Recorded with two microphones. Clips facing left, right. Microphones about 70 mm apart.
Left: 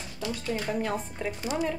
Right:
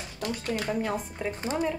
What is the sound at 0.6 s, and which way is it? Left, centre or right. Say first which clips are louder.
Speech: even; centre.